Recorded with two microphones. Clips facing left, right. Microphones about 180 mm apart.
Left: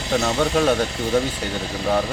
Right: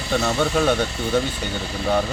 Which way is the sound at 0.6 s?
Centre (ahead or behind).